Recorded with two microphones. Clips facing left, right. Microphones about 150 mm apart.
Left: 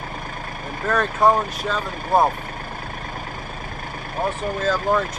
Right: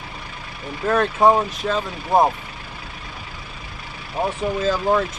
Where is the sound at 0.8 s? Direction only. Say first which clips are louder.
Right 2 dB; 5° right (ahead or behind).